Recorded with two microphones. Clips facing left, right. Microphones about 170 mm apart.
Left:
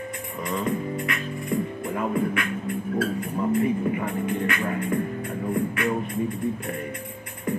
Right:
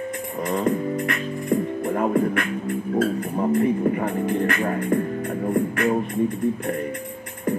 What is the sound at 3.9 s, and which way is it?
Music, 40° right (ahead or behind).